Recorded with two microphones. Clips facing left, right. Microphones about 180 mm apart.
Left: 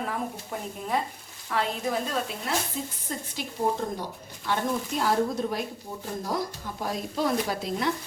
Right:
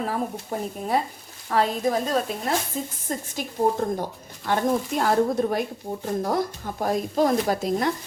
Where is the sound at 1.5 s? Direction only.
40° right (ahead or behind).